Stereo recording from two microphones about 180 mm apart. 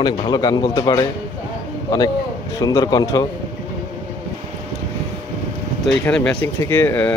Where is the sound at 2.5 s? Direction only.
20° left (ahead or behind).